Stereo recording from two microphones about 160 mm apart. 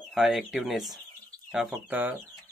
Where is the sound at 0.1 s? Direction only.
Centre (ahead or behind).